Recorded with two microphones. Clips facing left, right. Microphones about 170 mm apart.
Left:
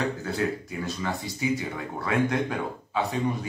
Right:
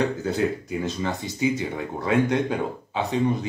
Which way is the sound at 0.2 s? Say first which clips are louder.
Right 4 dB; 20° right (ahead or behind).